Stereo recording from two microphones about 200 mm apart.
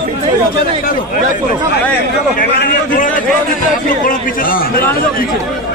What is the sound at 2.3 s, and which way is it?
Speech, 45° left (ahead or behind).